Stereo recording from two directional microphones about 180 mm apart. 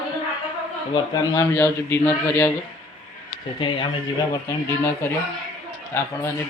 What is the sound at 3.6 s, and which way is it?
Speech, 30° left (ahead or behind).